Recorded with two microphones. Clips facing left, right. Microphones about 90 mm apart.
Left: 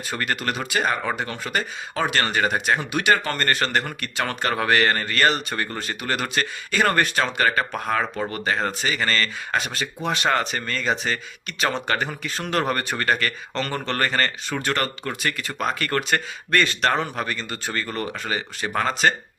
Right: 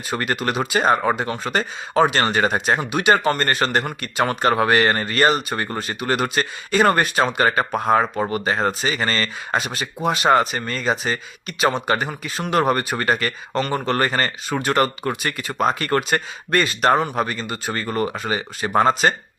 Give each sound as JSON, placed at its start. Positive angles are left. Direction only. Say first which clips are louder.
{"t": 0.1, "sound": "a man's voice", "louder": "right 4 dB", "side_deg": -20}
{"t": 1.5, "sound": "speech", "louder": "right 4 dB", "side_deg": -35}
{"t": 2.0, "sound": "a man's voice", "louder": "right 3 dB", "side_deg": -25}